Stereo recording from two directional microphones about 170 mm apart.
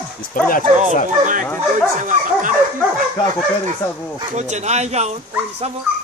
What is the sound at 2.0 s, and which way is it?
Speech, 45° right (ahead or behind).